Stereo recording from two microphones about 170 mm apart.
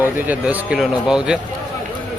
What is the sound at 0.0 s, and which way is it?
Speech, 10° right (ahead or behind).